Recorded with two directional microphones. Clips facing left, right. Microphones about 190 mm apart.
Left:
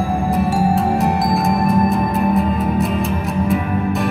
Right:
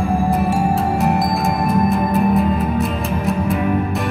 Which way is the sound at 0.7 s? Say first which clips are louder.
Left 1 dB; centre (ahead or behind).